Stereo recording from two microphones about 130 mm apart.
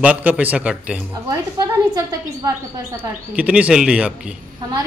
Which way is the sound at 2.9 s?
10° right (ahead or behind).